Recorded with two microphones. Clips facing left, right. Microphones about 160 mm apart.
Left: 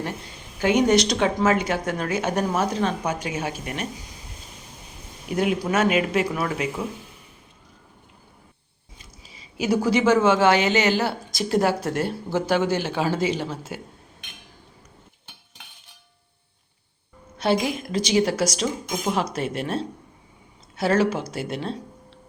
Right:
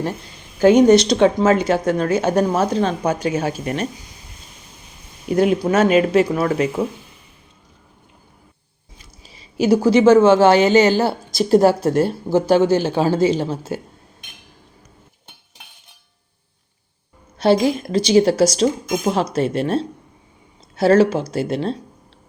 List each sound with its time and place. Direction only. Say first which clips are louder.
0.6 s a woman's voice: right 8 dB; 35° right (ahead or behind)
5.3 s a woman's voice: right 6 dB; 40° right (ahead or behind)
9.6 s a woman's voice: right 7 dB; 30° right (ahead or behind)
17.3 s a woman's voice: right 7 dB; 35° right (ahead or behind)